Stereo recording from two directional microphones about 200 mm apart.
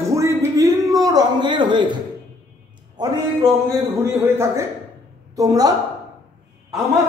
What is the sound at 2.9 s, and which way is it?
A woman's voice, 20° right (ahead or behind).